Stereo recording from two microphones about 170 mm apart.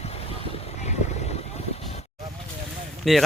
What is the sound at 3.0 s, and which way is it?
Speech, centre (ahead or behind).